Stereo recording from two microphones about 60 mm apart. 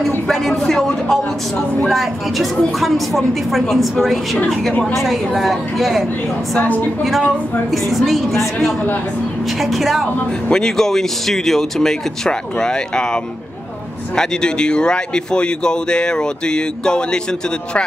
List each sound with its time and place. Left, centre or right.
0.3 s a woman's voice: centre
6.6 s a woman's voice: left
7.9 s a woman's voice: centre